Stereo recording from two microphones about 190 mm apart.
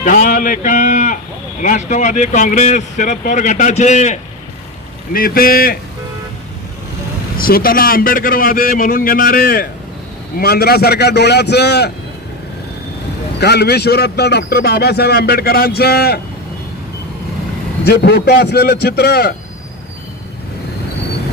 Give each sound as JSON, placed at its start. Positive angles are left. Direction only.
{"t": 0.0, "sound": "speech", "side_deg": 45}
{"t": 5.1, "sound": "a man's voice", "side_deg": 50}
{"t": 7.3, "sound": "a man's voice", "side_deg": 50}
{"t": 13.4, "sound": "a man's voice", "side_deg": 60}
{"t": 17.8, "sound": "a man's voice", "side_deg": 60}